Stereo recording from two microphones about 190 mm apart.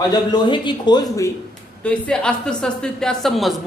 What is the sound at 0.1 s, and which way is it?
Speech, 20° left (ahead or behind).